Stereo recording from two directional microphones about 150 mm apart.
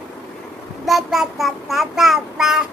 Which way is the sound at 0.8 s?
Centre (ahead or behind).